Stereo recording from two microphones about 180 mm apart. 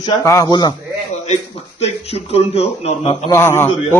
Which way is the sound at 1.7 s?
35° left (ahead or behind).